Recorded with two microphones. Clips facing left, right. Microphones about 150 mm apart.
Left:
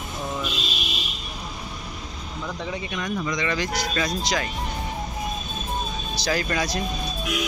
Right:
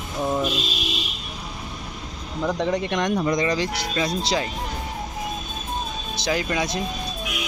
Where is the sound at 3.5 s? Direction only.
30° right (ahead or behind).